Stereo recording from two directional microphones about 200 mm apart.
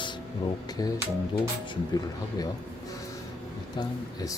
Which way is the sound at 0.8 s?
20° left (ahead or behind).